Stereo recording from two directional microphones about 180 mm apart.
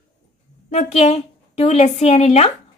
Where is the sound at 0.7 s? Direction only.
35° left (ahead or behind).